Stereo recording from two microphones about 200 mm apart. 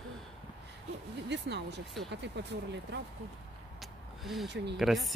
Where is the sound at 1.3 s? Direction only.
60° right (ahead or behind).